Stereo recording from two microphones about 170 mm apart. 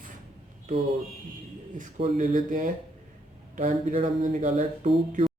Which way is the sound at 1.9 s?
50° right (ahead or behind).